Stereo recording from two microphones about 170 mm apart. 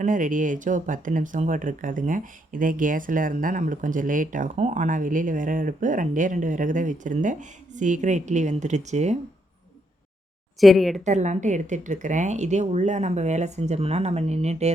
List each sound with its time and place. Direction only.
0.0 s speech: 50° right (ahead or behind)
10.6 s speech: centre (ahead or behind)
11.0 s speech: 45° right (ahead or behind)